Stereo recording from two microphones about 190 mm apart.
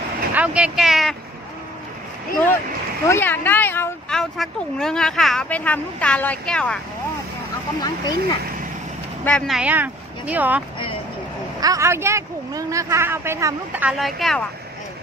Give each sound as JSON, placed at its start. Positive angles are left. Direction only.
{"t": 0.3, "sound": "speech", "side_deg": -5}
{"t": 3.1, "sound": "speech", "side_deg": 10}
{"t": 7.8, "sound": "speech", "side_deg": 20}
{"t": 9.2, "sound": "speech", "side_deg": 5}
{"t": 9.6, "sound": "speech", "side_deg": -5}
{"t": 11.6, "sound": "speech", "side_deg": -15}